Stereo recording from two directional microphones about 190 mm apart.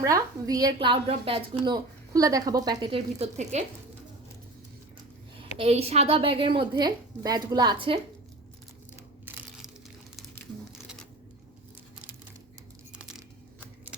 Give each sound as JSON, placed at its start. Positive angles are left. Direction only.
{"t": 0.0, "sound": "a woman's voice", "side_deg": -20}
{"t": 5.5, "sound": "a woman's voice", "side_deg": -30}
{"t": 9.2, "sound": "crushing", "side_deg": -10}
{"t": 10.2, "sound": "a sound", "side_deg": 0}
{"t": 12.9, "sound": "keys jangling", "side_deg": -5}